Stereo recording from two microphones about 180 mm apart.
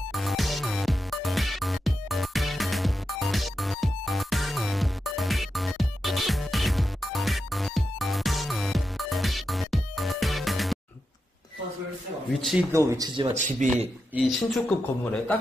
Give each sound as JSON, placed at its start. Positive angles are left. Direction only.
{"t": 0.1, "sound": "music", "side_deg": 0}
{"t": 12.4, "sound": "speech", "side_deg": 0}
{"t": 12.7, "sound": "speech", "side_deg": -15}
{"t": 13.3, "sound": "a man's voice", "side_deg": -45}
{"t": 14.1, "sound": "speech", "side_deg": 0}